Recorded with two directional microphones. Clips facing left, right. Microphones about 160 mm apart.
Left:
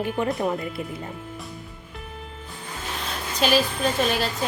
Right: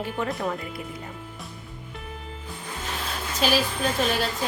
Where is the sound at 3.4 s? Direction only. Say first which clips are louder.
Left 2 dB; centre (ahead or behind).